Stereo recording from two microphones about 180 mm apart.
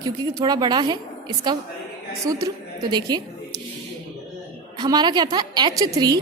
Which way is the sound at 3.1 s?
20° right (ahead or behind).